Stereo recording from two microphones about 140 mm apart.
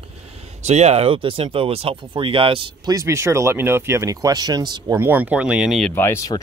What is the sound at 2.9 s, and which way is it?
Speech, 20° right (ahead or behind).